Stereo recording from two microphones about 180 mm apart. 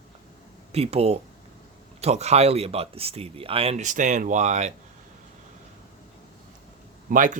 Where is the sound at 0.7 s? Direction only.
35° right (ahead or behind).